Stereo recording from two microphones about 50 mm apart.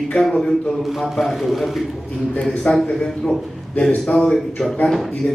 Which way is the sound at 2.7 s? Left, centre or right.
Left.